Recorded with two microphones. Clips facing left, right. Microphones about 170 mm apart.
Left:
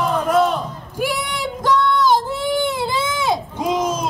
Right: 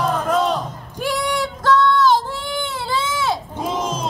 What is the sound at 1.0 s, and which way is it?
Child singing, 10° left (ahead or behind).